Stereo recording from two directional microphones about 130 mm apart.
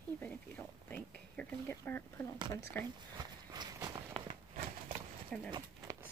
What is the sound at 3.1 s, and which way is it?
Run, 30° right (ahead or behind).